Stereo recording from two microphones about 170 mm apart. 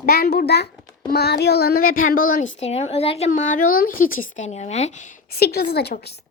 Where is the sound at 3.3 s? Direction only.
50° left (ahead or behind).